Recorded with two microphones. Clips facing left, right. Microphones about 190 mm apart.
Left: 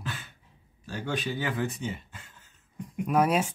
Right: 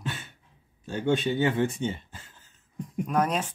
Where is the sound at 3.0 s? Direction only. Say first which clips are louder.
Left 3 dB; 5° left (ahead or behind).